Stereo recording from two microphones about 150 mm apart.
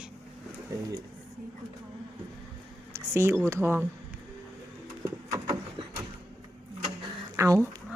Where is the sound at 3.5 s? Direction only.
15° right (ahead or behind).